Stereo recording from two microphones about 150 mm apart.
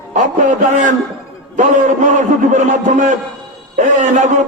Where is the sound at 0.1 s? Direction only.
55° right (ahead or behind).